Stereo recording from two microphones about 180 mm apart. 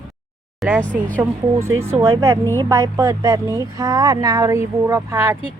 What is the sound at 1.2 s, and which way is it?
Speech, 15° right (ahead or behind).